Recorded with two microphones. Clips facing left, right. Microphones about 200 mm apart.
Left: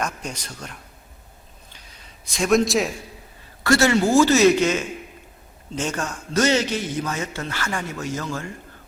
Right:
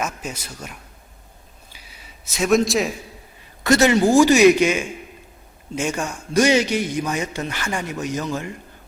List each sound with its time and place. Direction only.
0.0 s a man's voice: 5° right (ahead or behind)
1.7 s a sound: 5° right (ahead or behind)
3.6 s a man's voice: 20° right (ahead or behind)